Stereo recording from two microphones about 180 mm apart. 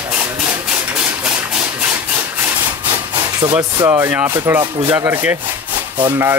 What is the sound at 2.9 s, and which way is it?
Speech, 20° right (ahead or behind).